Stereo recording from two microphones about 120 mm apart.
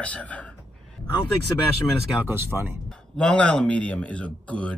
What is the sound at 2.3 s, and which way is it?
Speech, 20° right (ahead or behind).